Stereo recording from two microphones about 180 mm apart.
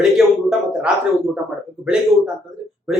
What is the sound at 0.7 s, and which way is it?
A man's voice, 5° right (ahead or behind).